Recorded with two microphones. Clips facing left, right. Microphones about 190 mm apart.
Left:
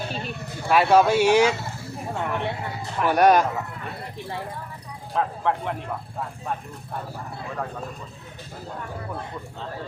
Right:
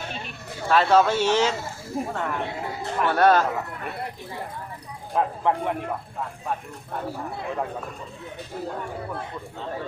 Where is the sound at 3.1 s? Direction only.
15° left (ahead or behind).